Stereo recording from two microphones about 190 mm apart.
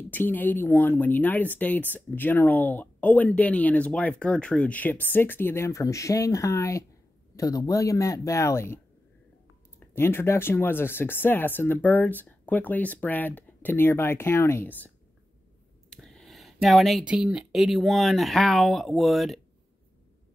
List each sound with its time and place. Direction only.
0.1 s speech: 10° left (ahead or behind)
9.8 s speech: 10° left (ahead or behind)
15.9 s a sound: centre (ahead or behind)
17.1 s speech: 5° right (ahead or behind)